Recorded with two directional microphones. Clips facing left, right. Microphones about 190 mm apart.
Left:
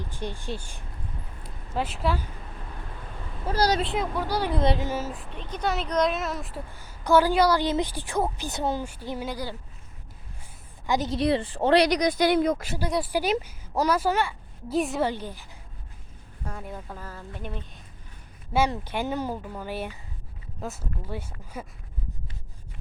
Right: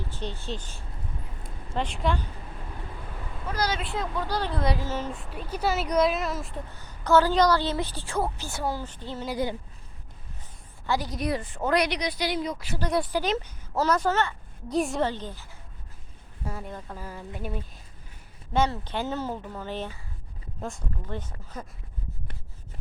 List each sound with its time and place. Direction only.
0.0 s a woman's voice: 15° left (ahead or behind)
3.4 s a woman's voice: 30° left (ahead or behind)
3.9 s a woman's voice: 10° left (ahead or behind)
4.6 s a woman's voice: 25° left (ahead or behind)
4.9 s speech: 5° left (ahead or behind)
6.7 s a woman's voice: 10° left (ahead or behind)
10.8 s a woman's voice: 20° left (ahead or behind)
11.9 s speech: 45° left (ahead or behind)
12.9 s a woman's voice: 10° left (ahead or behind)
15.0 s a woman's voice: 10° left (ahead or behind)
16.4 s speech: 5° right (ahead or behind)
16.6 s speech: 5° left (ahead or behind)
17.0 s speech: 10° right (ahead or behind)
18.5 s a woman's voice: 10° left (ahead or behind)